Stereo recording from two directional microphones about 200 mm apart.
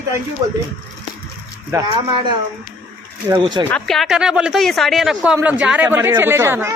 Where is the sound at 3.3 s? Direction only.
20° right (ahead or behind).